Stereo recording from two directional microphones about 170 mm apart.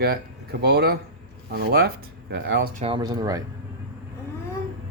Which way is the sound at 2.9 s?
25° right (ahead or behind).